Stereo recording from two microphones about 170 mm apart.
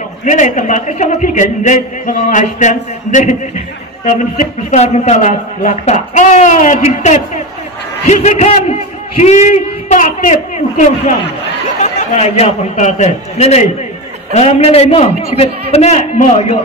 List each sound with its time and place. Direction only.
0.2 s a man's voice: 45° left (ahead or behind)